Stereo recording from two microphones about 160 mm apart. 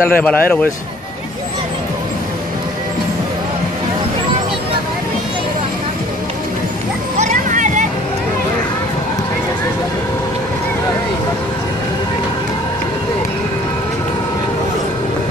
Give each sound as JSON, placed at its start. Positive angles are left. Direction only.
{"t": 0.0, "sound": "speech", "side_deg": 10}
{"t": 7.2, "sound": "vehicle", "side_deg": -50}